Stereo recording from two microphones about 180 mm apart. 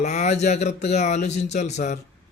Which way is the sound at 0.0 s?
40° left (ahead or behind).